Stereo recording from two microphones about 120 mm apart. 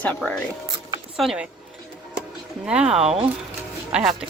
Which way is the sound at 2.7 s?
5° right (ahead or behind).